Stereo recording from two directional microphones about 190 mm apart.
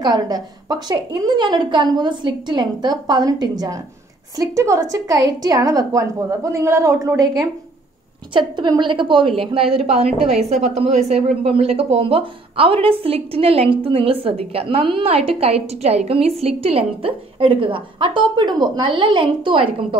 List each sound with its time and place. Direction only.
0.0 s a woman's voice: 20° right (ahead or behind)